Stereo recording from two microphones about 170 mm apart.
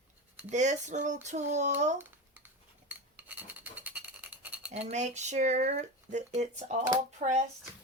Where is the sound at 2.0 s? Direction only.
10° right (ahead or behind).